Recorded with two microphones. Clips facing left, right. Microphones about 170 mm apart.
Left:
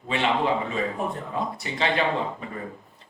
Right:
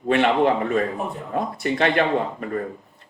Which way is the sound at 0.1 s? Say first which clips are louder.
Right 6 dB; 55° right (ahead or behind).